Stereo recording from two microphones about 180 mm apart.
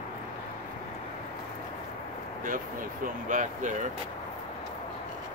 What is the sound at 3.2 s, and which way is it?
Speech, 45° right (ahead or behind).